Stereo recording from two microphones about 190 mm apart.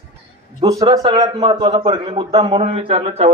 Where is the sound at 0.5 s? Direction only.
15° right (ahead or behind); by 3.3 s 35° right (ahead or behind).